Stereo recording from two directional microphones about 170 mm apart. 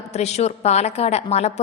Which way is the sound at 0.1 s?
40° left (ahead or behind).